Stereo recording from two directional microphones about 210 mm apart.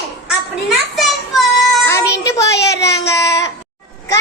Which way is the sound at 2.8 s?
15° left (ahead or behind).